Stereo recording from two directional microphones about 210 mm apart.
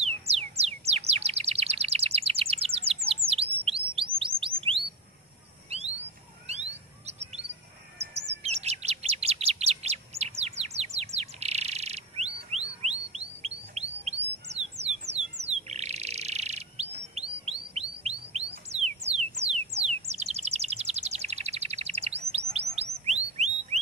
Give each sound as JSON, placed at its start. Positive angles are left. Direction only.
{"t": 0.0, "sound": "music", "side_deg": -30}
{"t": 3.1, "sound": "chirp", "side_deg": -25}
{"t": 5.7, "sound": "bird", "side_deg": -30}
{"t": 8.1, "sound": "chirp", "side_deg": -30}
{"t": 18.7, "sound": "music", "side_deg": -30}
{"t": 23.0, "sound": "whistle", "side_deg": -30}